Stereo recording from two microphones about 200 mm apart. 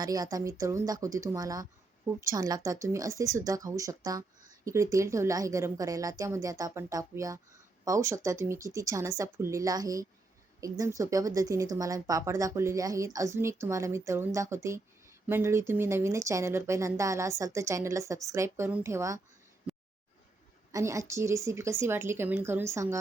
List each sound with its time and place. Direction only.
0.0 s a woman's voice: 20° right (ahead or behind)
20.7 s a woman's voice: 15° right (ahead or behind)